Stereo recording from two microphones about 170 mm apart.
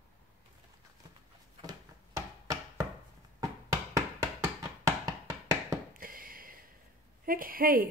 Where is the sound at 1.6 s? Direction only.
20° right (ahead or behind).